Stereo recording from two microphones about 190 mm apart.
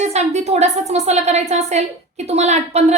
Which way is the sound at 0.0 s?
35° right (ahead or behind).